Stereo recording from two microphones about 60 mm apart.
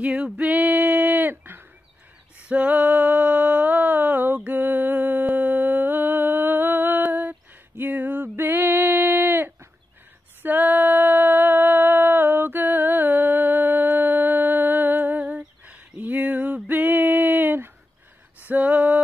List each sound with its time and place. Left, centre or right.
0.0 s male singing: right
1.3 s bird: right
2.4 s music: right
10.4 s a sound: right